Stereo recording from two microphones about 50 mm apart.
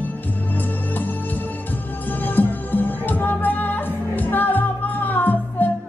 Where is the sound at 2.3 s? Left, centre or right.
Left.